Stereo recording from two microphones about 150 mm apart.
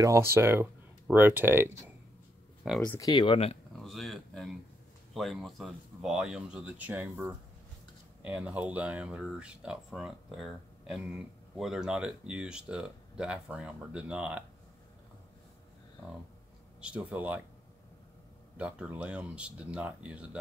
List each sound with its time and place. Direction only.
0.0 s speech: 20° right (ahead or behind)
2.6 s speech: centre (ahead or behind)
3.0 s speech: 30° left (ahead or behind)
3.8 s speech: centre (ahead or behind)
16.8 s speech: 10° right (ahead or behind)
18.6 s speech: 10° right (ahead or behind)